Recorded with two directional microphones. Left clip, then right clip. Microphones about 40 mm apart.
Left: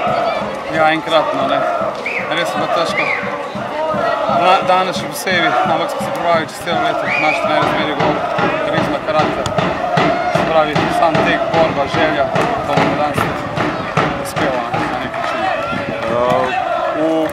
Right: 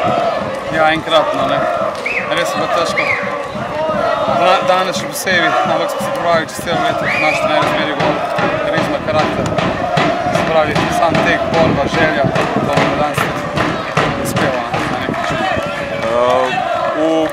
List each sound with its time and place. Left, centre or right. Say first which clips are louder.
0.7 s speech: right 1 dB; centre
4.4 s speech: even; centre
6.2 s speech: even; centre
6.8 s a man's voice: right 1 dB; right
8.0 s a sound: even; right
11.6 s speech: right 1 dB; right
12.4 s a man's voice: right 1 dB; right
13.6 s music: right 1 dB; right